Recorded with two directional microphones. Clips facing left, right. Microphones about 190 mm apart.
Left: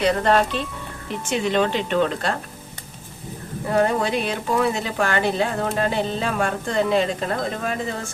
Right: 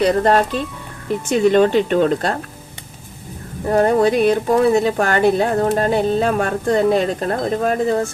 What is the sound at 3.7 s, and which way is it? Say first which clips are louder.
Speech: right 6 dB; 45° right (ahead or behind).